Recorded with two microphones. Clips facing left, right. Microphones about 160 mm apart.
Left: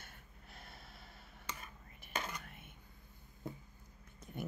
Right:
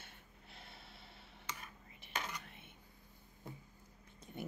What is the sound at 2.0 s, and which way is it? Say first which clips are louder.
Whispering: left 2 dB; 50° left (ahead or behind).